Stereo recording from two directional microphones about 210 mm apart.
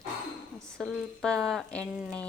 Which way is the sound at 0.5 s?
Centre (ahead or behind).